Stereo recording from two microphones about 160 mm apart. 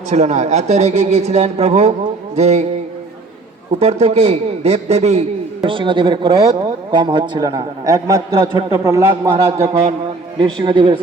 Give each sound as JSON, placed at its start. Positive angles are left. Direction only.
{"t": 0.1, "sound": "a man's voice", "side_deg": -45}
{"t": 3.8, "sound": "a man's voice", "side_deg": -40}